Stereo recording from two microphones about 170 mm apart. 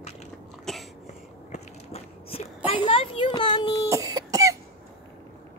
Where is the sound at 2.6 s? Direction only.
30° left (ahead or behind).